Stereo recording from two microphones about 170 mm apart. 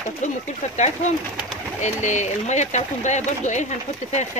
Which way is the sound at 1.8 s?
45° left (ahead or behind).